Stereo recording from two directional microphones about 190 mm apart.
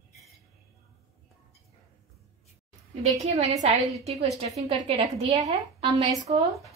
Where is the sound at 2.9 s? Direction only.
35° right (ahead or behind).